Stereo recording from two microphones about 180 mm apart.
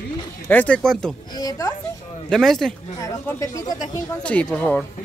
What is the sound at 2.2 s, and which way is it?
Speech, centre (ahead or behind).